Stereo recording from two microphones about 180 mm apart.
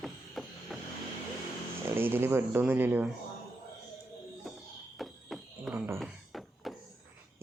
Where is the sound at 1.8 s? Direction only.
15° right (ahead or behind).